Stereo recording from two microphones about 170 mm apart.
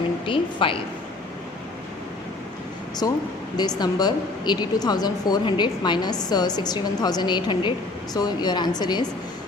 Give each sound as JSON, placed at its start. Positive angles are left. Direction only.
{"t": 0.3, "sound": "a woman's voice", "side_deg": 30}
{"t": 3.0, "sound": "speech", "side_deg": 25}